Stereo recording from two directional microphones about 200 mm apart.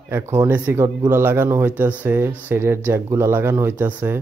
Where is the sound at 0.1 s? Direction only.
10° right (ahead or behind).